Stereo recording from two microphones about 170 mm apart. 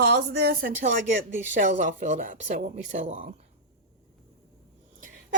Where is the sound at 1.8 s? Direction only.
45° right (ahead or behind).